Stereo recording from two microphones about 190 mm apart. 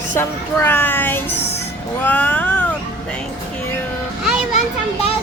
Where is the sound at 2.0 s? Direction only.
10° left (ahead or behind).